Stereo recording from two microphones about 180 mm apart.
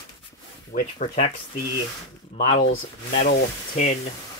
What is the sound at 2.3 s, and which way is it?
Speech, 35° left (ahead or behind).